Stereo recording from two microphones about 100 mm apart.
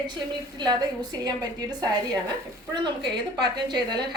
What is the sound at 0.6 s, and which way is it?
A woman's voice, 45° right (ahead or behind).